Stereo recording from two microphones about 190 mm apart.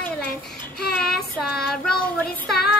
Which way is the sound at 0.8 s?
55° left (ahead or behind).